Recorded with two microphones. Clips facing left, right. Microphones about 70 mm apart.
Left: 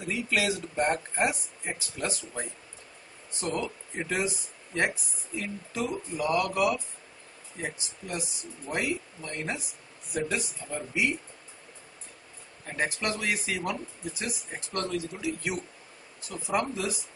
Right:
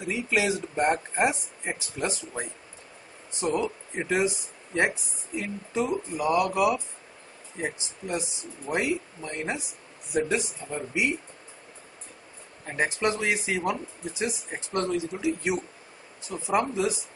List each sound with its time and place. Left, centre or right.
0.0 s speech: centre
12.6 s speech: right